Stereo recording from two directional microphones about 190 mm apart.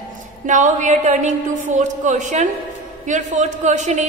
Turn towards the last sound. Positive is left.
turn(degrees=-40)  # may be behind; listen again after turning